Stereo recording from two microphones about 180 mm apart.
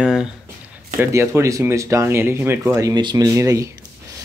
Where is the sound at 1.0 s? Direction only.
15° right (ahead or behind).